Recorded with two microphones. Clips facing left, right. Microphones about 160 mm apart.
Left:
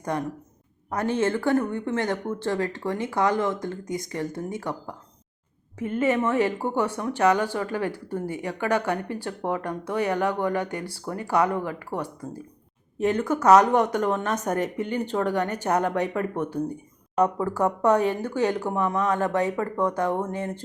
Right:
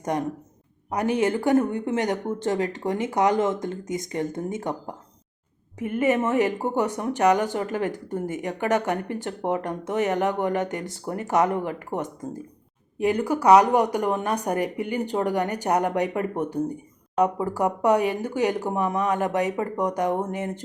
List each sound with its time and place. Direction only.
0.1 s a woman's voice: 15° right (ahead or behind)